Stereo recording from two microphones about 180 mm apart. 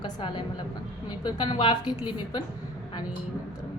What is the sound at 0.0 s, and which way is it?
A woman's voice, 30° left (ahead or behind).